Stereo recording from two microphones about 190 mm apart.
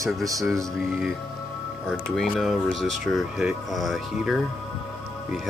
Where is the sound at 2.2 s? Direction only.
Centre (ahead or behind).